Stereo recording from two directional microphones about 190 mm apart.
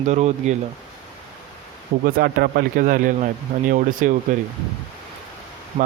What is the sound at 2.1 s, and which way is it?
Speech, 55° right (ahead or behind).